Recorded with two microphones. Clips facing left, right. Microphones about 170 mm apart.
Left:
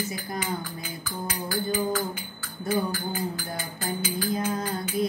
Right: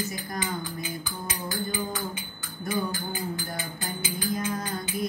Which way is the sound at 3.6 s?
20° right (ahead or behind).